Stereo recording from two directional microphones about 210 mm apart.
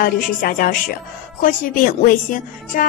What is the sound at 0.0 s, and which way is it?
A woman's voice, 45° left (ahead or behind).